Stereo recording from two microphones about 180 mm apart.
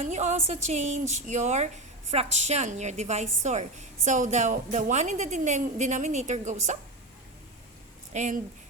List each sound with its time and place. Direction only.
0.0 s speech: 40° right (ahead or behind)
8.1 s speech: 40° right (ahead or behind)